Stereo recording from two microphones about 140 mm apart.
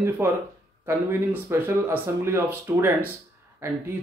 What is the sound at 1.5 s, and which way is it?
Speech, 15° right (ahead or behind).